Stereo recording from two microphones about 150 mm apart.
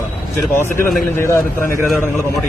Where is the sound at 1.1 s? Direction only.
15° left (ahead or behind).